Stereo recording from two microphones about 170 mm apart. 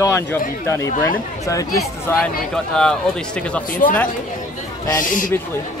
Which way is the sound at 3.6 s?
55° left (ahead or behind).